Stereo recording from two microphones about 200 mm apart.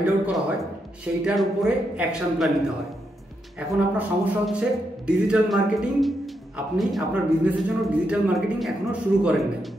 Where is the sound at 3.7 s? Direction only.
5° right (ahead or behind).